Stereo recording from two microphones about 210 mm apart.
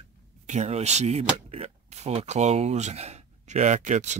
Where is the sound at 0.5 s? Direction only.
30° right (ahead or behind).